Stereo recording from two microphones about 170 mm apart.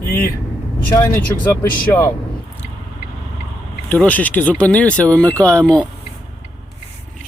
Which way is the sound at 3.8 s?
10° left (ahead or behind).